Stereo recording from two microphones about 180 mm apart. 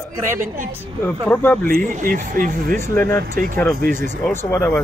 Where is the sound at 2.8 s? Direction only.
15° left (ahead or behind).